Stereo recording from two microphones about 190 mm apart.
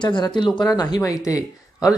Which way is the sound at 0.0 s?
25° left (ahead or behind).